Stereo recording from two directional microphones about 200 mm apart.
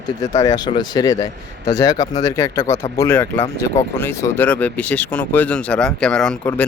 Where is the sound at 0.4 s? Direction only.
20° left (ahead or behind).